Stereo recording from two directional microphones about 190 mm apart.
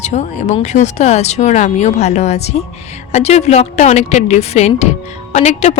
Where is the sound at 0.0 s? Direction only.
40° left (ahead or behind).